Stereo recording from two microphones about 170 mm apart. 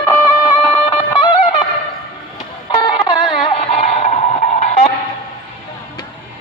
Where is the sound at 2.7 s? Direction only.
30° left (ahead or behind).